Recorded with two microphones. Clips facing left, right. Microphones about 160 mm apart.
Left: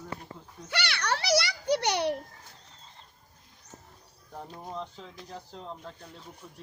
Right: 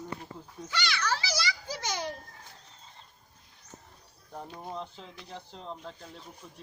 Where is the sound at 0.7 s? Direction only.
65° left (ahead or behind).